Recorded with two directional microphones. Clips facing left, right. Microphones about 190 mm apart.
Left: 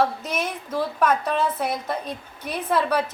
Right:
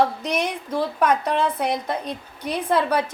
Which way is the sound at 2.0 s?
10° left (ahead or behind).